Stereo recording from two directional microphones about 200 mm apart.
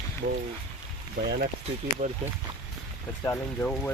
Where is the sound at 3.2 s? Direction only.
10° left (ahead or behind).